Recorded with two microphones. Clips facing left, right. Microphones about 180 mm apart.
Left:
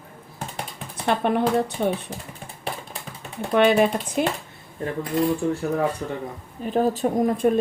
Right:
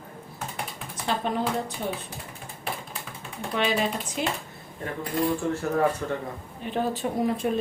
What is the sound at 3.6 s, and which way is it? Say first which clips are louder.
Speech: left 8 dB; 55° left (ahead or behind).